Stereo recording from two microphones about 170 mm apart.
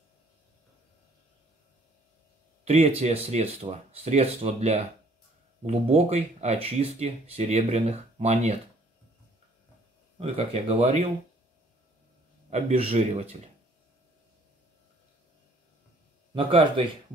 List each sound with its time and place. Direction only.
2.6 s speech: 35° right (ahead or behind)
10.1 s speech: 35° right (ahead or behind)
12.4 s speech: 40° right (ahead or behind)
16.3 s speech: 30° right (ahead or behind)